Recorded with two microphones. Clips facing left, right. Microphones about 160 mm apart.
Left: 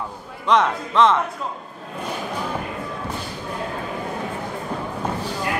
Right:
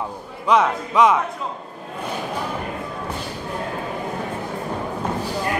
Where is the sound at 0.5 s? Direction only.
10° right (ahead or behind).